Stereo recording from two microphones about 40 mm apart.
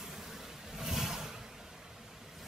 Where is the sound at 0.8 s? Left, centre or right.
Centre.